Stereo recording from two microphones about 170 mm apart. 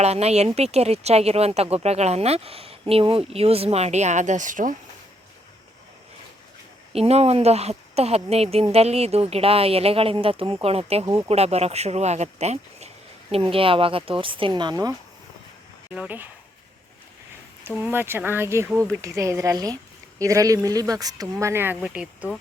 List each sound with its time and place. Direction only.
0.0 s speech: 40° right (ahead or behind)
6.9 s speech: 35° right (ahead or behind)
11.0 s speech: 20° right (ahead or behind)
11.3 s speech: 40° right (ahead or behind)
16.0 s speech: 10° right (ahead or behind)
17.7 s speech: 10° right (ahead or behind)